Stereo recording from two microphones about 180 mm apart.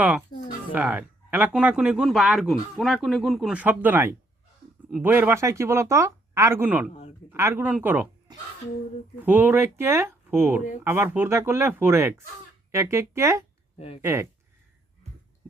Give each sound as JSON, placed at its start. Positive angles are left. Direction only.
{"t": 0.7, "sound": "speech", "side_deg": -10}
{"t": 8.3, "sound": "speech", "side_deg": -25}
{"t": 9.2, "sound": "speech", "side_deg": -10}
{"t": 13.7, "sound": "speech", "side_deg": 30}
{"t": 14.0, "sound": "speech", "side_deg": -15}